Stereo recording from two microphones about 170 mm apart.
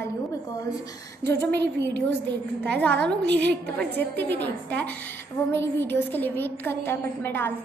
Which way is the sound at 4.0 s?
10° left (ahead or behind).